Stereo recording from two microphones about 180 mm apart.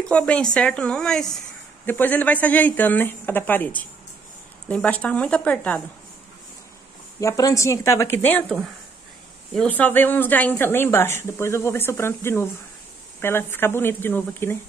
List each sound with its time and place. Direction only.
0.1 s a woman's voice: 5° left (ahead or behind)
7.2 s speech: 20° left (ahead or behind)